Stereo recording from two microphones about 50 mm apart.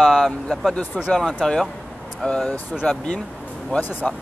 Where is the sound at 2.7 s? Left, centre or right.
Centre.